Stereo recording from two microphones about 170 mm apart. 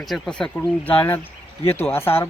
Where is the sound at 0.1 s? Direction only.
5° left (ahead or behind).